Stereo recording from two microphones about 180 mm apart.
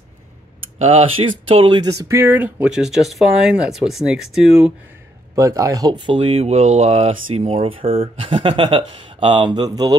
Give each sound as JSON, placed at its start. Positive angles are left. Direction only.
{"t": 0.7, "sound": "speech", "side_deg": -35}
{"t": 5.3, "sound": "speech", "side_deg": -20}